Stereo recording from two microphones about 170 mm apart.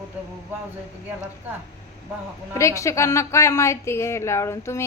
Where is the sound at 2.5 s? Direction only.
20° left (ahead or behind).